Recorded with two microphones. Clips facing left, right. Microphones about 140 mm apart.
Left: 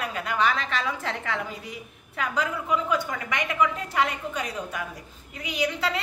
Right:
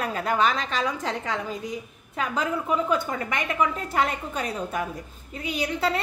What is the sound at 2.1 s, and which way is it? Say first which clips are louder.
A woman's voice: right 2 dB; 25° right (ahead or behind).